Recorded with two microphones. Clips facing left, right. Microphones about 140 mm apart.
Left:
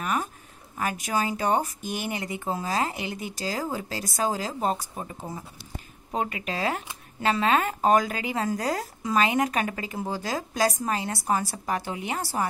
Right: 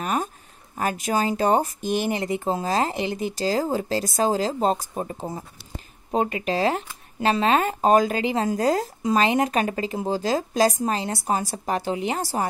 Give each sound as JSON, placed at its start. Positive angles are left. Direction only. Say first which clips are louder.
{"t": 0.0, "sound": "a sound", "louder": "right 3 dB", "side_deg": -30}
{"t": 0.7, "sound": "speech", "louder": "right 4 dB", "side_deg": -35}
{"t": 6.1, "sound": "speech", "louder": "right 6 dB", "side_deg": -30}
{"t": 12.2, "sound": "a woman's voice", "louder": "right 3 dB", "side_deg": -40}